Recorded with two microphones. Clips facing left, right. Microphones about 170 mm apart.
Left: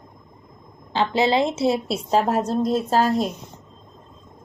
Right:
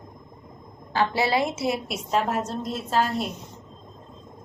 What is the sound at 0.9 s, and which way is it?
A woman's voice, 20° left (ahead or behind).